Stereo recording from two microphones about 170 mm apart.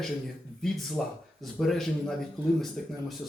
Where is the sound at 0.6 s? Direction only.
Centre (ahead or behind).